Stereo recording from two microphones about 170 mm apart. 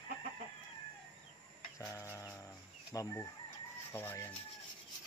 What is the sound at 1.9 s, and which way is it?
Music, 15° left (ahead or behind).